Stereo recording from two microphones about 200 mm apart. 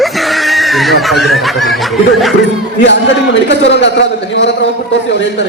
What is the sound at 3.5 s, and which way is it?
A man's voice, 65° left (ahead or behind).